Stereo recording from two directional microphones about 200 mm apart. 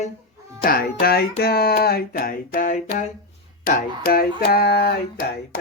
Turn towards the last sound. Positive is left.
turn(degrees=50)  # may be behind; listen again after turning